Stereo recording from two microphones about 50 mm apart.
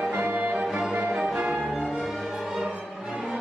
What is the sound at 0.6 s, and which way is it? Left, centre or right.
Music, centre.